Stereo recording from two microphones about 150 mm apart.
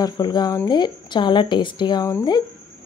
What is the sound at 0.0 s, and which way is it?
A woman's voice, 30° left (ahead or behind).